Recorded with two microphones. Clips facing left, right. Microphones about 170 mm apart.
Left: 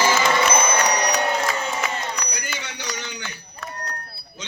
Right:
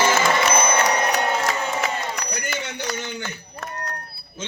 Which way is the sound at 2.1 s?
50° right (ahead or behind).